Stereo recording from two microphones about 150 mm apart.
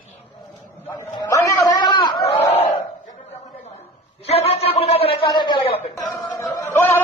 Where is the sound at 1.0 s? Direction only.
20° left (ahead or behind).